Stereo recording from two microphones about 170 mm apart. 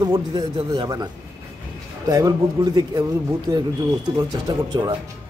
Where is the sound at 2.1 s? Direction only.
20° right (ahead or behind).